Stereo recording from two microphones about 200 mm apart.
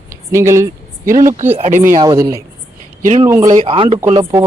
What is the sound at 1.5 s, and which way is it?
Speech, 35° right (ahead or behind).